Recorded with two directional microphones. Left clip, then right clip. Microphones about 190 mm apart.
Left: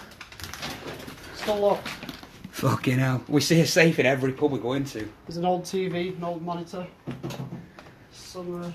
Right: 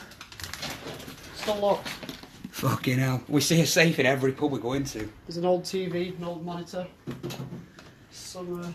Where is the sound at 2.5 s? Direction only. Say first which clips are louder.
Left 2 dB; 10° left (ahead or behind).